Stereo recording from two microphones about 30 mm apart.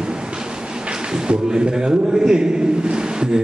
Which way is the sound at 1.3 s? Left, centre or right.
Right.